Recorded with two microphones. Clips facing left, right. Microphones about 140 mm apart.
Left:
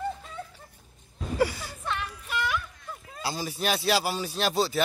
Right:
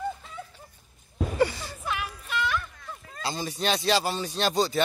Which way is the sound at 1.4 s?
5° left (ahead or behind).